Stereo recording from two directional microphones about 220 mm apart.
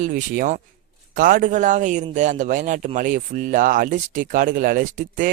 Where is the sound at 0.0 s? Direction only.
40° right (ahead or behind).